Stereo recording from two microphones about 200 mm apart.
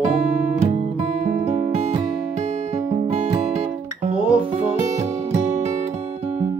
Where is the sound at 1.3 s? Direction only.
35° right (ahead or behind).